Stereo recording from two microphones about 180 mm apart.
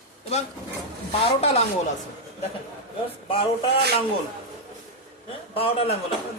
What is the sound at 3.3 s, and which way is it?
Speech, 30° left (ahead or behind).